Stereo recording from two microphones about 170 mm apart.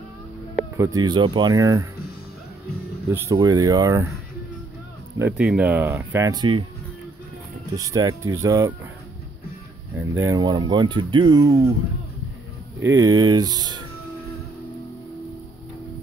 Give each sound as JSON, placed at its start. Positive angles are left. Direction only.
{"t": 0.7, "sound": "speech", "side_deg": -25}
{"t": 3.1, "sound": "speech", "side_deg": -15}
{"t": 5.2, "sound": "speech", "side_deg": -5}
{"t": 7.7, "sound": "speech", "side_deg": -20}
{"t": 10.2, "sound": "speech", "side_deg": -25}
{"t": 12.8, "sound": "speech", "side_deg": -20}